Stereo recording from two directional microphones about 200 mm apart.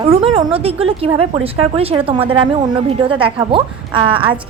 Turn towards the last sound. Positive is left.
turn(degrees=-25)  # may be behind; listen again after turning